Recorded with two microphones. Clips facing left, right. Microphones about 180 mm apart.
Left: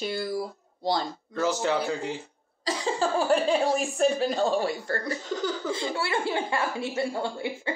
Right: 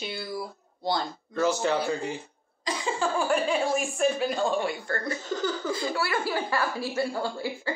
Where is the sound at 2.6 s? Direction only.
35° left (ahead or behind).